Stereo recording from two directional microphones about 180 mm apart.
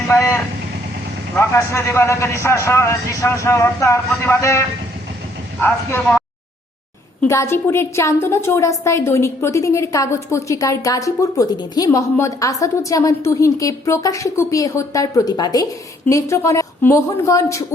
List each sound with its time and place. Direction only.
0.1 s vehicle: 15° left (ahead or behind)
1.4 s a woman's voice: 15° left (ahead or behind)
5.6 s a woman's voice: 5° left (ahead or behind)